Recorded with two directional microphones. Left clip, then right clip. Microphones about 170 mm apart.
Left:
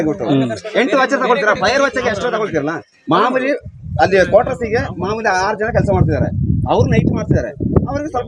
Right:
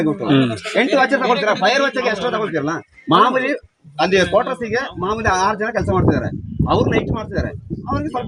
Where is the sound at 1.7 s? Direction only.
5° right (ahead or behind); by 5.2 s 20° right (ahead or behind).